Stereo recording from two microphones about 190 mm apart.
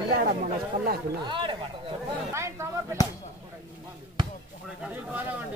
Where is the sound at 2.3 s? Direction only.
15° right (ahead or behind).